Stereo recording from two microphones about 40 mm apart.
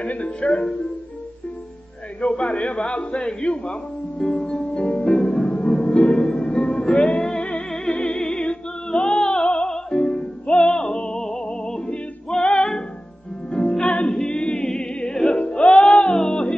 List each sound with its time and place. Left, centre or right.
0.0 s a man's voice: left
2.2 s a man's voice: left
4.2 s music: centre
5.2 s music: centre
9.3 s opera: left
9.7 s music: centre
13.5 s music: left
14.0 s a capella: centre
14.8 s music: left
15.6 s music: left
16.3 s music: left